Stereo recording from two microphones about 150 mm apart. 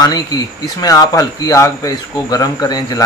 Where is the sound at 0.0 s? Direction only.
25° left (ahead or behind).